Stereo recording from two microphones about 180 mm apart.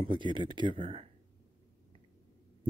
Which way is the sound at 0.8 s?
35° right (ahead or behind).